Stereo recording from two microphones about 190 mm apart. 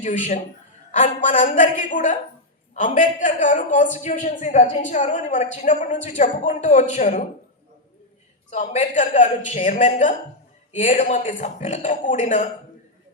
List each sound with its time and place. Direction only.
0.0 s a woman's voice: 40° left (ahead or behind)
8.4 s a woman's voice: 40° left (ahead or behind)